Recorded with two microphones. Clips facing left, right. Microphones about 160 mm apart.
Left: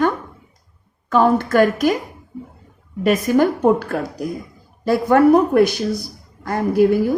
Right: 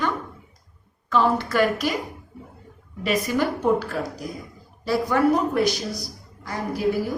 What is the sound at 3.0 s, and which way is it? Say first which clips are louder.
A woman's voice: left 7 dB; 50° left (ahead or behind).